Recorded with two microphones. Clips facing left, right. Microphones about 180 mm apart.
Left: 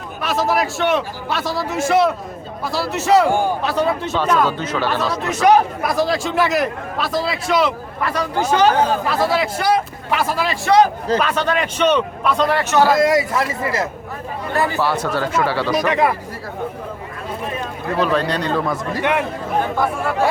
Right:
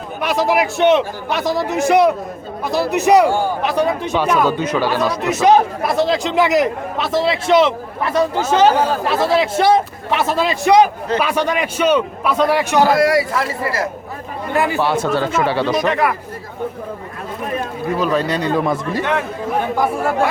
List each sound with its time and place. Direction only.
0.2 s a man's voice: 15° right (ahead or behind)
12.9 s a man's voice: 20° left (ahead or behind)
14.5 s a man's voice: 15° right (ahead or behind)
15.9 s a man's voice: 20° left (ahead or behind)
17.9 s a man's voice: 5° right (ahead or behind)